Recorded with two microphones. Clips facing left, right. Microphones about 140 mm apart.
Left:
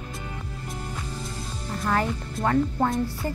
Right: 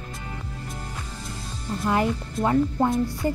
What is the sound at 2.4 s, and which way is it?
Speech, 15° right (ahead or behind).